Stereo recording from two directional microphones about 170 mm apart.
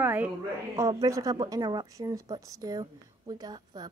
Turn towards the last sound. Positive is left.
turn(degrees=-25)  # may be behind; listen again after turning